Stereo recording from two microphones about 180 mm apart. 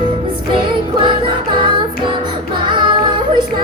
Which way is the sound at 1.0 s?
25° right (ahead or behind).